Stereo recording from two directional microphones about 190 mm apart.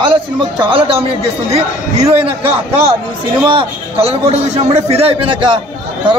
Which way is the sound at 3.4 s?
25° right (ahead or behind).